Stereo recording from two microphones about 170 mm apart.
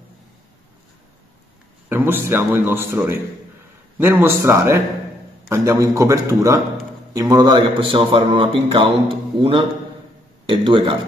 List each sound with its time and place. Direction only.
1.9 s a man's voice: 15° right (ahead or behind); by 11.0 s 30° right (ahead or behind)